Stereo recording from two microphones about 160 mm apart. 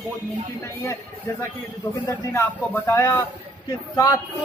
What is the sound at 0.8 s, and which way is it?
Speech, 20° left (ahead or behind).